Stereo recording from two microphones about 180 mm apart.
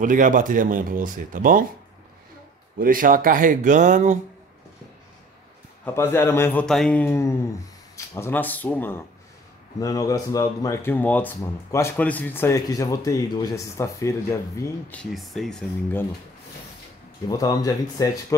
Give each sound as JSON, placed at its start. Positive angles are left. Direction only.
{"t": 0.0, "sound": "speech", "side_deg": -45}
{"t": 2.8, "sound": "speech", "side_deg": -50}
{"t": 5.9, "sound": "speech", "side_deg": 15}
{"t": 17.3, "sound": "speech", "side_deg": 20}